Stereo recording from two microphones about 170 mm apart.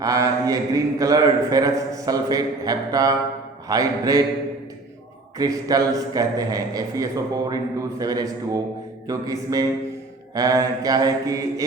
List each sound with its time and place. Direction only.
0.0 s a man's voice: 20° right (ahead or behind)
5.4 s a man's voice: 20° right (ahead or behind)